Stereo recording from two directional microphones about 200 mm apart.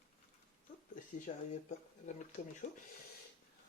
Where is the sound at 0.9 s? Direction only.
40° left (ahead or behind).